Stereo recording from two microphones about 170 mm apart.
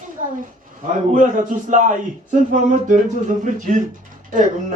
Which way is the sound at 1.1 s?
50° right (ahead or behind).